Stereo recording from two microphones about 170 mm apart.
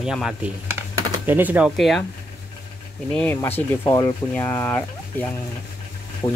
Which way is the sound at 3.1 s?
10° left (ahead or behind).